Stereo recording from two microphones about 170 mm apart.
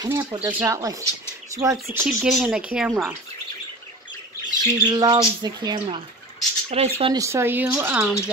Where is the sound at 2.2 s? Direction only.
Centre (ahead or behind).